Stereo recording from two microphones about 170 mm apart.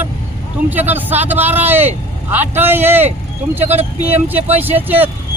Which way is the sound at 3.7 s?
40° right (ahead or behind).